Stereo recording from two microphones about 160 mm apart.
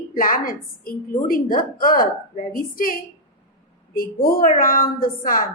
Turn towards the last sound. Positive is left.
turn(degrees=60)  # may be behind; listen again after turning